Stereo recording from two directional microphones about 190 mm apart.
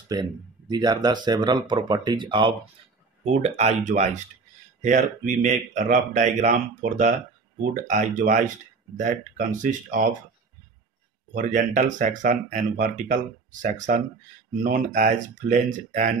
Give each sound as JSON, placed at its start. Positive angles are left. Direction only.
{"t": 0.1, "sound": "speech", "side_deg": -20}
{"t": 3.3, "sound": "speech", "side_deg": -35}
{"t": 11.3, "sound": "speech", "side_deg": -45}